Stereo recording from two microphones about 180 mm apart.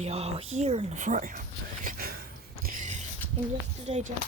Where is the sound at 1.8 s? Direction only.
55° right (ahead or behind).